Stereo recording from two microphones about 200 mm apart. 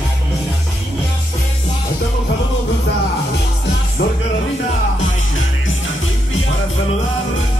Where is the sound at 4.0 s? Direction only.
55° left (ahead or behind).